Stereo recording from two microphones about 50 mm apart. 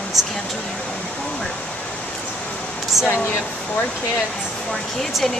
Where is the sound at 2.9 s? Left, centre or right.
Centre.